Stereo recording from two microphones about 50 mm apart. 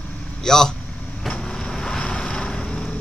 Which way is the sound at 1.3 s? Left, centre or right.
Centre.